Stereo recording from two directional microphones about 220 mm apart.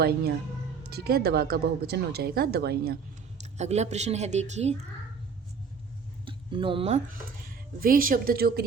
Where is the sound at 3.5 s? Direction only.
30° right (ahead or behind).